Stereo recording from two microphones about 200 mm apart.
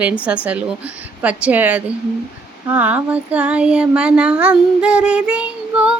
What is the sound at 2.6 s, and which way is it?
Child singing, 10° right (ahead or behind).